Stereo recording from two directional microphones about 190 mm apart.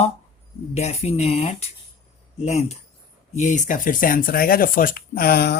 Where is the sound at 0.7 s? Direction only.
35° left (ahead or behind).